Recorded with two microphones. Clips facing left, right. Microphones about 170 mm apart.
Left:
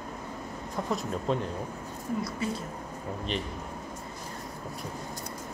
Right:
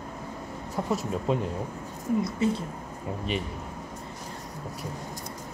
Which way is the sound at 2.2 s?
25° right (ahead or behind).